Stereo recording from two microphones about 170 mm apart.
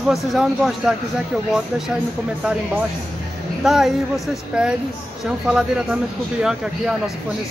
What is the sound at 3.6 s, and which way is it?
Speech, centre (ahead or behind).